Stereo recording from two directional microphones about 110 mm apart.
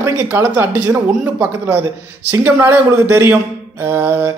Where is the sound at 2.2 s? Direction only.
20° right (ahead or behind).